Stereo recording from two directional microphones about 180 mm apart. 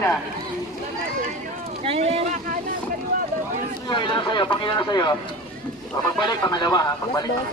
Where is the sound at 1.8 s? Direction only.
35° right (ahead or behind).